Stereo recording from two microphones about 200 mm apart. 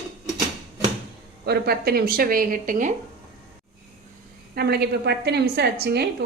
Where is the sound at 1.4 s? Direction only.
55° right (ahead or behind).